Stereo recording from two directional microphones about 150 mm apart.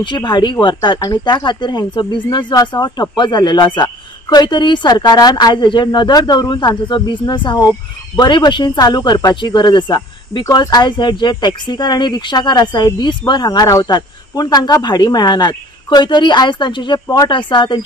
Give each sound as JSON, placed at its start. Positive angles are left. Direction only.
{"t": 0.0, "sound": "speech", "side_deg": 30}